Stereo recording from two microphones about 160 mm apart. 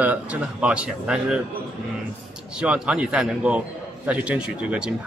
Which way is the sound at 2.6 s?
5° right (ahead or behind).